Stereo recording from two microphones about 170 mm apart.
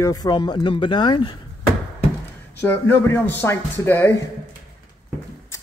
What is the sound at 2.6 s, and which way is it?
Speech, 15° left (ahead or behind).